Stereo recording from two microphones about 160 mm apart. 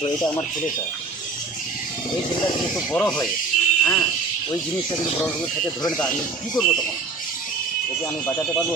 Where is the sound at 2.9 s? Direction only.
10° left (ahead or behind).